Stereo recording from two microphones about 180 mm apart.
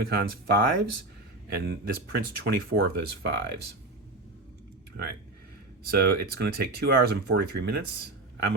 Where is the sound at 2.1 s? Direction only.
60° right (ahead or behind).